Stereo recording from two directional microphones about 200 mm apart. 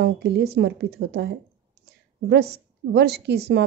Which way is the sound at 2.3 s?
55° right (ahead or behind).